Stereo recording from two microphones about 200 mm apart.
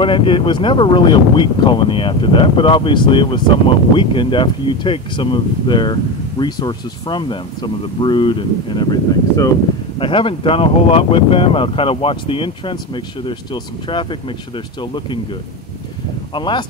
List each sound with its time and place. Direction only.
0.0 s speech: 25° left (ahead or behind)
9.9 s speech: 25° left (ahead or behind)
16.3 s speech: 25° left (ahead or behind)